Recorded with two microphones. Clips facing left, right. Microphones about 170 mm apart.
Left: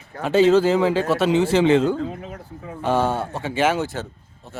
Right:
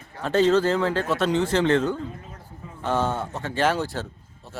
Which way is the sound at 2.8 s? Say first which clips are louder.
Left 4 dB; 10° left (ahead or behind).